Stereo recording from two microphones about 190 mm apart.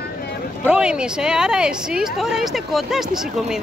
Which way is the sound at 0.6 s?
5° right (ahead or behind).